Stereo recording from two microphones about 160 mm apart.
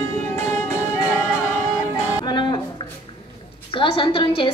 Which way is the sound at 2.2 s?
30° left (ahead or behind).